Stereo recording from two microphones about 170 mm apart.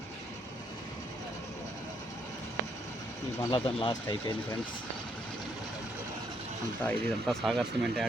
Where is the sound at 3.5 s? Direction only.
30° left (ahead or behind).